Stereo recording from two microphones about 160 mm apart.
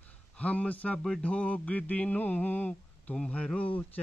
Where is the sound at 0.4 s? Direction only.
10° left (ahead or behind).